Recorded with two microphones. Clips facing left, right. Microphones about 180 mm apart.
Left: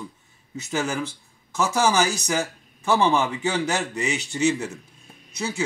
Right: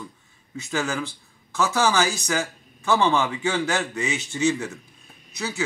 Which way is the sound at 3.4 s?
20° left (ahead or behind).